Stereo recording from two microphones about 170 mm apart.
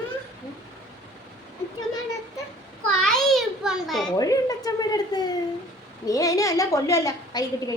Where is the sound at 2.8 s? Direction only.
Centre (ahead or behind).